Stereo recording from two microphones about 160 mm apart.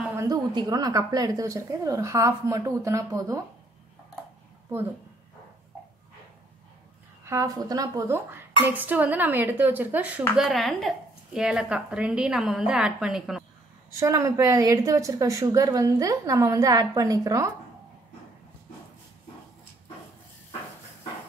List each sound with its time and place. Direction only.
0.3 s a woman's voice: 25° right (ahead or behind)
7.2 s a woman's voice: 20° right (ahead or behind); by 13.4 s 5° right (ahead or behind)
13.9 s a woman's voice: 20° right (ahead or behind)